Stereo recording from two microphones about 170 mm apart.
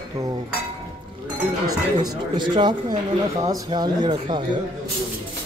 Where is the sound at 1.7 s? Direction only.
25° right (ahead or behind).